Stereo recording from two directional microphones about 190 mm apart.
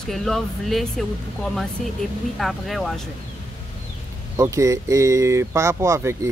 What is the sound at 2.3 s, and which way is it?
Speech, centre (ahead or behind).